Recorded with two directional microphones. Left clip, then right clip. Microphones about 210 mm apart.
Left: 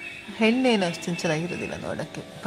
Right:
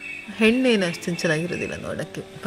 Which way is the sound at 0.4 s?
5° right (ahead or behind).